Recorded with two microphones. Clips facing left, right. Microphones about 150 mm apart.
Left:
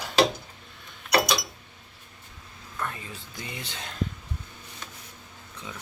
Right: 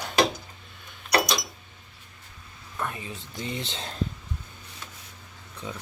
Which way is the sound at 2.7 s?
15° right (ahead or behind).